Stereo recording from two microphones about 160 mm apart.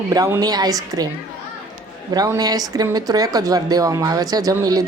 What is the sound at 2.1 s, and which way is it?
Speech, 25° right (ahead or behind).